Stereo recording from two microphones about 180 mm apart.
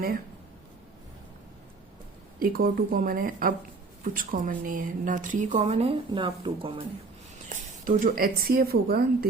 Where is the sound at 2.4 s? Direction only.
50° right (ahead or behind); by 6.8 s 30° right (ahead or behind).